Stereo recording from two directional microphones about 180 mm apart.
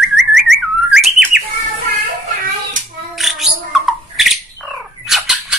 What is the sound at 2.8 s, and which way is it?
Child singing, 45° right (ahead or behind).